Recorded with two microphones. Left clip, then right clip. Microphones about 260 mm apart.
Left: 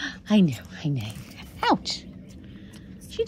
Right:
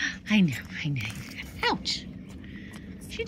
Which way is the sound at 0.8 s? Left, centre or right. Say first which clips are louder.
Left 1 dB; centre.